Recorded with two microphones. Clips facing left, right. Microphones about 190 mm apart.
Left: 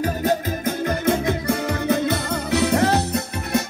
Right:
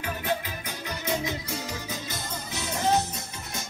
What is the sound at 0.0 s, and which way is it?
Music, 40° left (ahead or behind).